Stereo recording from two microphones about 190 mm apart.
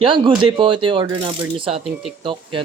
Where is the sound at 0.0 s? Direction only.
25° right (ahead or behind).